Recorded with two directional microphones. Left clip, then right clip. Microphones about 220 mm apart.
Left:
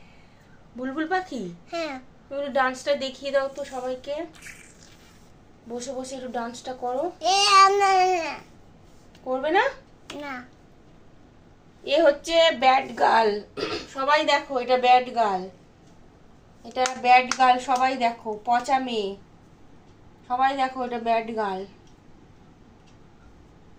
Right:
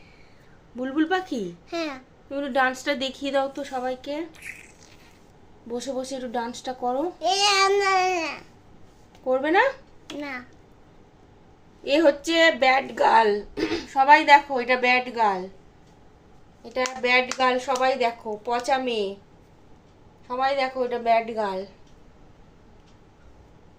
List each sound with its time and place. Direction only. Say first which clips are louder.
0.8 s a woman's voice: right 2 dB; 30° right (ahead or behind)
1.7 s babbling: even; 10° right (ahead or behind)
2.3 s speech: right 1 dB; 30° right (ahead or behind)
5.7 s speech: right 3 dB; 30° right (ahead or behind)
7.2 s babbling: left 5 dB; centre (ahead or behind); by 8.4 s 15° right (ahead or behind)
9.3 s speech: right 2 dB; 30° right (ahead or behind)
10.2 s babbling: right 1 dB; 15° right (ahead or behind)
11.9 s speech: even; 30° right (ahead or behind)
17.4 s a woman's voice: left 2 dB; 30° right (ahead or behind)
20.2 s a woman's voice: left 1 dB; 25° right (ahead or behind)